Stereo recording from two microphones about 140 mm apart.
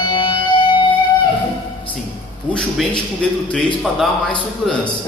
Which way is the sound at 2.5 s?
5° left (ahead or behind).